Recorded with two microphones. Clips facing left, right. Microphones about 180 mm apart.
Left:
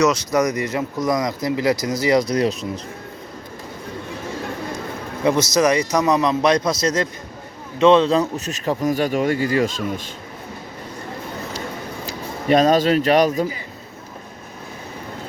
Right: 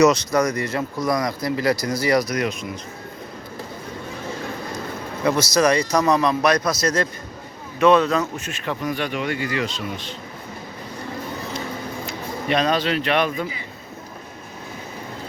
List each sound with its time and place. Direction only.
0.1 s speech: 10° left (ahead or behind); by 2.8 s 35° left (ahead or behind)
5.2 s speech: 20° left (ahead or behind); by 10.1 s 45° left (ahead or behind)
12.0 s speech: 40° left (ahead or behind)